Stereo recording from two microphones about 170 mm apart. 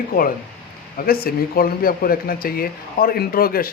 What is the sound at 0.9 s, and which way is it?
Speech, 60° left (ahead or behind).